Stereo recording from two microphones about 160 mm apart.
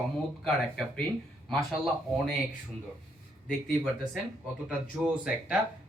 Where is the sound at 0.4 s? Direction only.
Centre (ahead or behind).